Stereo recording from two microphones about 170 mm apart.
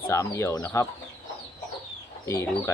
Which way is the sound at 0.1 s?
15° left (ahead or behind).